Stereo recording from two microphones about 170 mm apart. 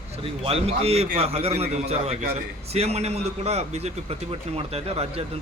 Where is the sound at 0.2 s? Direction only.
35° right (ahead or behind).